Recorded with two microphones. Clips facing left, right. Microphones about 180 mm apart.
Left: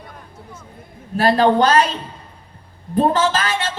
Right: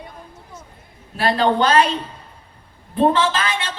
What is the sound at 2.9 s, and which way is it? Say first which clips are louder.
Speech: left 1 dB; 40° left (ahead or behind).